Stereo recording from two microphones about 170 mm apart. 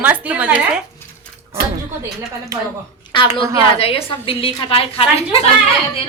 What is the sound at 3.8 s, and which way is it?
A woman's voice, 35° left (ahead or behind).